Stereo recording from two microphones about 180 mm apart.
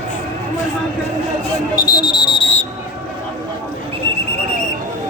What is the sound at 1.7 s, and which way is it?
Speech, 20° left (ahead or behind).